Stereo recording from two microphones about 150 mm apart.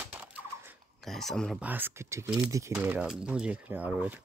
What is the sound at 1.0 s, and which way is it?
Speech, centre (ahead or behind).